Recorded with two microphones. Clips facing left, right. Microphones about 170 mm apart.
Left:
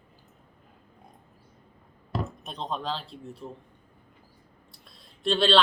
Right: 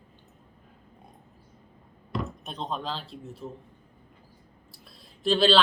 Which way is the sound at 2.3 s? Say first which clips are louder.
Even; centre (ahead or behind).